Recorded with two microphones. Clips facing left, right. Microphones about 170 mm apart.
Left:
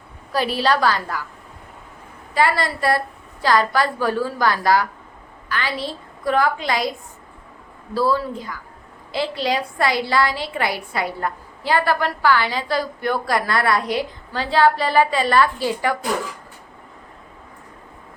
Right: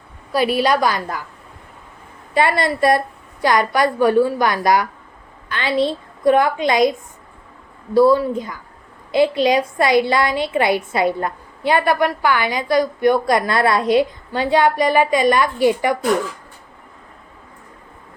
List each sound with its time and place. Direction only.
0.5 s a woman's voice: 15° right (ahead or behind)
2.3 s a woman's voice: 20° right (ahead or behind)
7.9 s a woman's voice: 20° right (ahead or behind)